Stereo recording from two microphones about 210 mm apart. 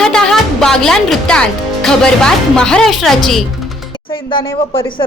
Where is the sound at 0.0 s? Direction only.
5° left (ahead or behind).